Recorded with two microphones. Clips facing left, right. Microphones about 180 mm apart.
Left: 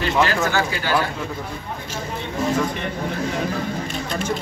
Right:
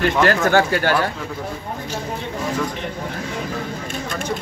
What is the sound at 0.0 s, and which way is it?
Speech, 55° right (ahead or behind).